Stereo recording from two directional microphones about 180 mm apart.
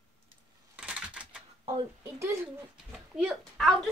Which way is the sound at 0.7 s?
5° right (ahead or behind).